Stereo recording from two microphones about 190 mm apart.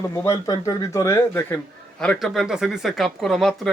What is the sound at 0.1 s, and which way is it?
Speech, 15° left (ahead or behind).